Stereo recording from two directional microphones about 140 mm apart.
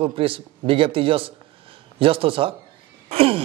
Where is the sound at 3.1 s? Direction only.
45° right (ahead or behind).